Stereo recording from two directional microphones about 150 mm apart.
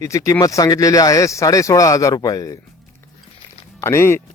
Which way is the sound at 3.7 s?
15° left (ahead or behind).